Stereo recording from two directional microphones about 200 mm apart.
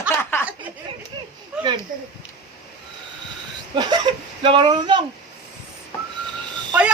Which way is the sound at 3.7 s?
20° right (ahead or behind).